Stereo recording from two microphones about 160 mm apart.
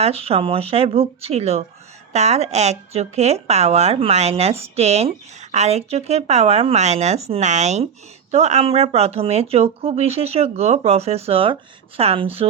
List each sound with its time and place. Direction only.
0.0 s speech: 40° right (ahead or behind)